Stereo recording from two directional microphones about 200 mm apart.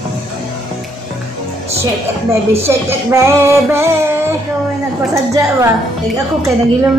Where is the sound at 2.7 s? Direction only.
15° right (ahead or behind).